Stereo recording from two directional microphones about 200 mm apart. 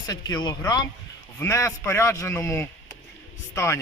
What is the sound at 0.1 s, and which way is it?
Speech, 20° left (ahead or behind).